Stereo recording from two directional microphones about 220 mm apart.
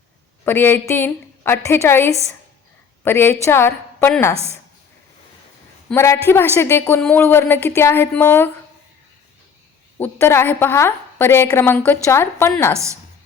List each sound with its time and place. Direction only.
0.4 s a woman's voice: 10° left (ahead or behind)
5.9 s a woman's voice: 10° left (ahead or behind)
10.0 s a woman's voice: 10° left (ahead or behind)
12.7 s a woman's voice: 15° right (ahead or behind)